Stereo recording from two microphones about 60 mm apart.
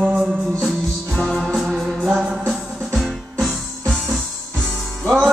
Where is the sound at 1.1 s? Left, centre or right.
Centre.